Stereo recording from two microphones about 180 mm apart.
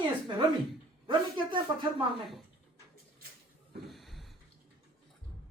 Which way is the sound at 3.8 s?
Centre (ahead or behind).